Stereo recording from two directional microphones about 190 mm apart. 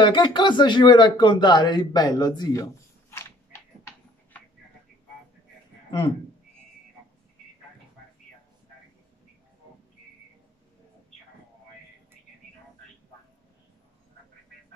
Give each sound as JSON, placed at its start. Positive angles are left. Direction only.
{"t": 0.0, "sound": "speech", "side_deg": 25}